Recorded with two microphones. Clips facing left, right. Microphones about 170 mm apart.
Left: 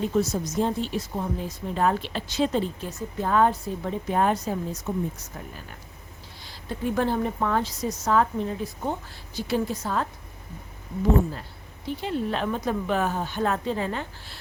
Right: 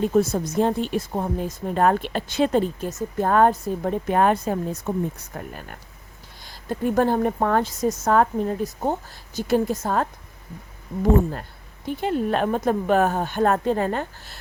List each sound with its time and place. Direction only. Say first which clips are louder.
0.0 s speech: right 4 dB; 50° right (ahead or behind)
11.9 s speech: right 5 dB; 50° right (ahead or behind)